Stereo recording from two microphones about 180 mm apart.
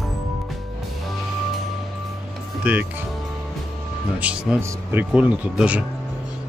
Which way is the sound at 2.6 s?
10° right (ahead or behind).